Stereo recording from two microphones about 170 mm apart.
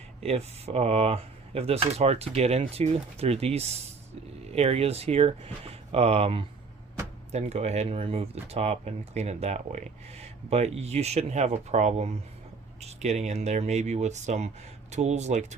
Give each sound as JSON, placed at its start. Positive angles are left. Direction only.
{"t": 0.2, "sound": "speech", "side_deg": -35}